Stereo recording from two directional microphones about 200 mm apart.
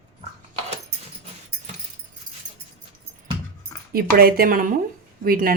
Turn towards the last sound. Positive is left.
turn(degrees=-45)  # may be behind; listen again after turning